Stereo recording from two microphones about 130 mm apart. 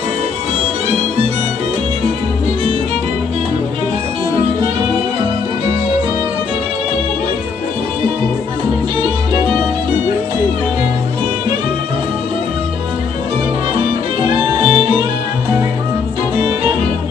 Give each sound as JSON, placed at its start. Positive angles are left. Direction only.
{"t": 14.6, "sound": "music", "side_deg": -40}